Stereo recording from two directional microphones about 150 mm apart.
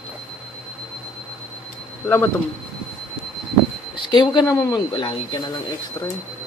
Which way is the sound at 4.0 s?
30° left (ahead or behind).